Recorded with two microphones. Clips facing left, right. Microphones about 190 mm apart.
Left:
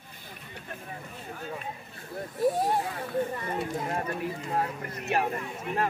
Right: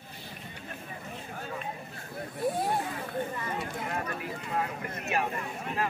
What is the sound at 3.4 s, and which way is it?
Speech, 30° left (ahead or behind).